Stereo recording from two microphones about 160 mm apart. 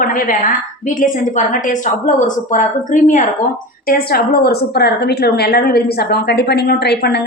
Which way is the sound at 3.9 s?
70° left (ahead or behind).